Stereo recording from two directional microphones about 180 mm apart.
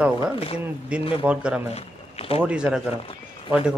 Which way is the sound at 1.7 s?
35° left (ahead or behind).